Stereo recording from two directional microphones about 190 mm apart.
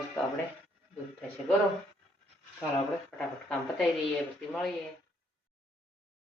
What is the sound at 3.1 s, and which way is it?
Speech, centre (ahead or behind).